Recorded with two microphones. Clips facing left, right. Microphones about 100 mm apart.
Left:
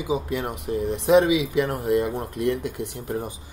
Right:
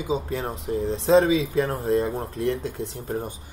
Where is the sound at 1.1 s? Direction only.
15° left (ahead or behind).